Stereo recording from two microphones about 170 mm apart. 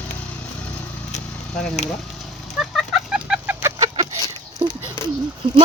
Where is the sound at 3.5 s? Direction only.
15° right (ahead or behind).